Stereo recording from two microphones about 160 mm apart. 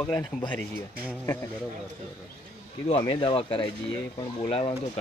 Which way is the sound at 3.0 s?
30° left (ahead or behind).